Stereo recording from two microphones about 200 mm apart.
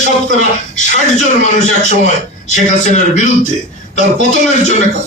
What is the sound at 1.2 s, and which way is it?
A man's voice, 35° left (ahead or behind).